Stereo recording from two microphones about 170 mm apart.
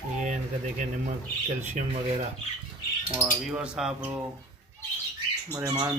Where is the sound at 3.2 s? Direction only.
5° right (ahead or behind).